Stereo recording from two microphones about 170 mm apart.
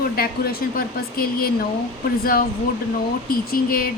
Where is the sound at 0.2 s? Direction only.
60° left (ahead or behind).